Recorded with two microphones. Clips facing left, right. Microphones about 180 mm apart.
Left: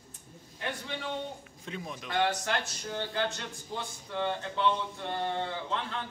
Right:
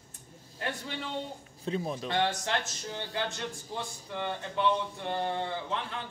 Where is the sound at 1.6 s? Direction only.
35° right (ahead or behind).